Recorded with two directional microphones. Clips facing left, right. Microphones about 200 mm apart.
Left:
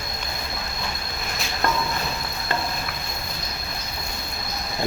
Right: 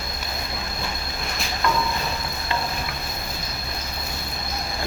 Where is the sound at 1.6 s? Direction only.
45° left (ahead or behind).